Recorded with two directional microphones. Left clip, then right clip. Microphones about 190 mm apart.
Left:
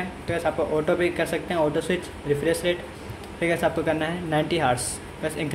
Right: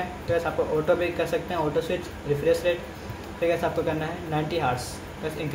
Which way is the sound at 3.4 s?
35° left (ahead or behind).